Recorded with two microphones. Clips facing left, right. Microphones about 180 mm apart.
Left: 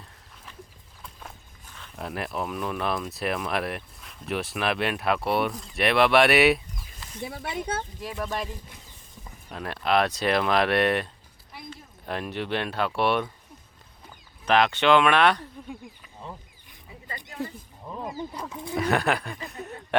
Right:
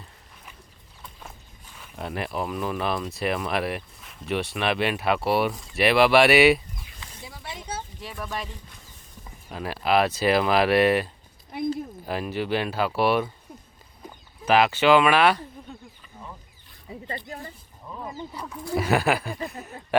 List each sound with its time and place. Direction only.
1.7 s speech: 5° right (ahead or behind)
7.2 s speech: 60° left (ahead or behind)
9.5 s speech: 5° right (ahead or behind)
14.4 s speech: 5° right (ahead or behind)
17.9 s speech: 15° left (ahead or behind)
18.7 s speech: 5° right (ahead or behind)